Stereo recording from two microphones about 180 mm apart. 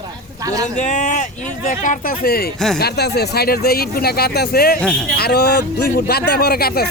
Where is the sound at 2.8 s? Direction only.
65° left (ahead or behind).